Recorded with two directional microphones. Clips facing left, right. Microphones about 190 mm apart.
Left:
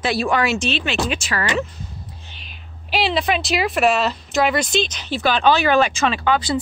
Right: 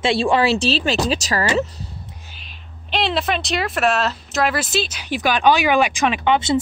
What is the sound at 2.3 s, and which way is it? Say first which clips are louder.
A woman's voice: even; centre (ahead or behind).